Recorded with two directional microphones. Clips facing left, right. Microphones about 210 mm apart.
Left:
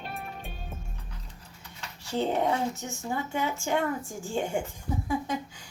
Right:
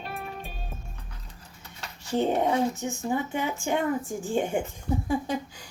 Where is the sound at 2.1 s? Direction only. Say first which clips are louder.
Right 2 dB; 15° right (ahead or behind).